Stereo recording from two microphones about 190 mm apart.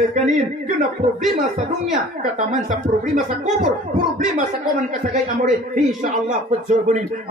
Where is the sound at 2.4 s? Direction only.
40° right (ahead or behind).